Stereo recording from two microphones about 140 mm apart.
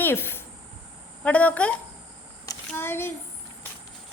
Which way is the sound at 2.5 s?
15° left (ahead or behind).